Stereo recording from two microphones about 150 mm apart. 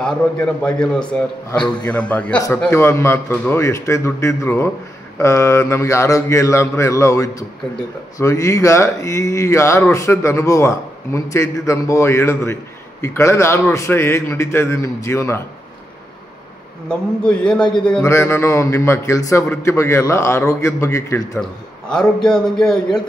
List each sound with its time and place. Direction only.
0.7 s a man's voice: 5° left (ahead or behind)
17.2 s a man's voice: 5° left (ahead or behind)
18.0 s a man's voice: 15° left (ahead or behind)
21.4 s a man's voice: 5° left (ahead or behind)